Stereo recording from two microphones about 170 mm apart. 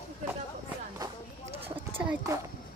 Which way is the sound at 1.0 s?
20° right (ahead or behind).